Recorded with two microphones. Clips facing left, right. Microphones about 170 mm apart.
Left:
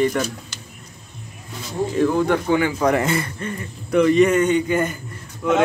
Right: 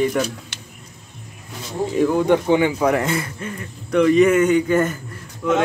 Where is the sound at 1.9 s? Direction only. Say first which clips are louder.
Right 2 dB; 15° right (ahead or behind).